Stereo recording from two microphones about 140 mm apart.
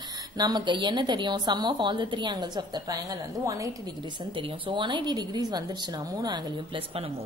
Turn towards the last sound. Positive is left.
turn(degrees=-30)  # may be behind; listen again after turning